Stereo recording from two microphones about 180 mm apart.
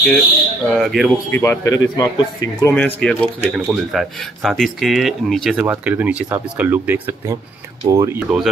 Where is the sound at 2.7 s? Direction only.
5° left (ahead or behind); by 8.2 s 20° right (ahead or behind).